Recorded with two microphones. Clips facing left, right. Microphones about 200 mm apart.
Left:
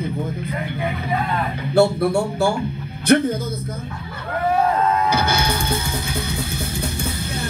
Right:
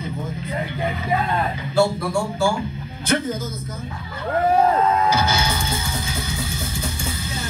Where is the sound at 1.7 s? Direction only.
65° left (ahead or behind).